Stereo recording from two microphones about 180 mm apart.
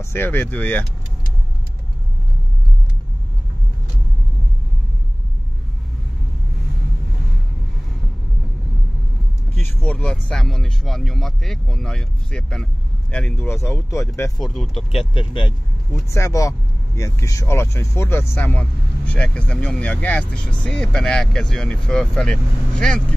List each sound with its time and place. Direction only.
0.0 s speech: 15° left (ahead or behind)
9.6 s speech: 10° left (ahead or behind)
14.4 s speech: centre (ahead or behind)
14.9 s speech: 30° left (ahead or behind)
15.9 s speech: 15° left (ahead or behind)